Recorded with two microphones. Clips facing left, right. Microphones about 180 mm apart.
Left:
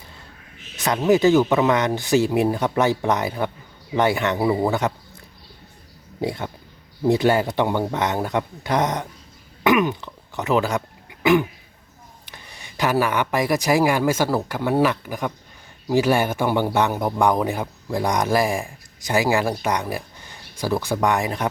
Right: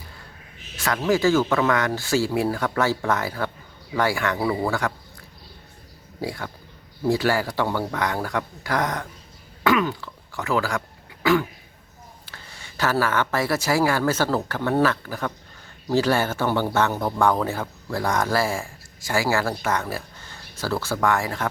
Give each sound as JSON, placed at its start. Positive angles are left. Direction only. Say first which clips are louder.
{"t": 0.8, "sound": "speech", "louder": "left 4 dB", "side_deg": 20}
{"t": 6.2, "sound": "speech", "louder": "left 4 dB", "side_deg": 20}